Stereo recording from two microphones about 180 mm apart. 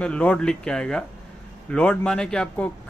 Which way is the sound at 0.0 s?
5° left (ahead or behind).